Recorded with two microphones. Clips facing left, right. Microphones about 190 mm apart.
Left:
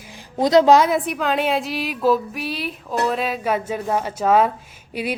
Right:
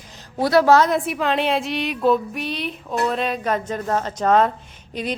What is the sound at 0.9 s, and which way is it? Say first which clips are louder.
A woman's voice: even; centre (ahead or behind).